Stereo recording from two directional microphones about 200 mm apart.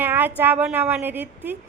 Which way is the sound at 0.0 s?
10° right (ahead or behind).